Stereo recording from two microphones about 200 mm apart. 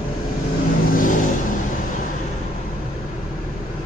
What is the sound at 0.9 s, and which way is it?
Vehicle, 40° left (ahead or behind).